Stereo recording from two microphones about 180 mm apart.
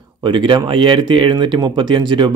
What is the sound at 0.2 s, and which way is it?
Speech, 25° right (ahead or behind).